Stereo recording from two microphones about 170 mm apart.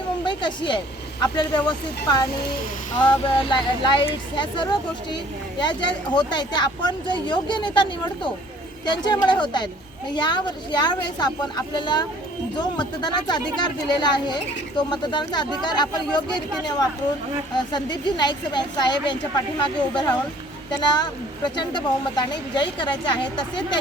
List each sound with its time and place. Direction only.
0.3 s speech: 30° left (ahead or behind)